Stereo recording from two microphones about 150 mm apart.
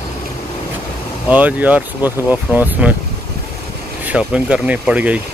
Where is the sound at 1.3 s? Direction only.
10° right (ahead or behind).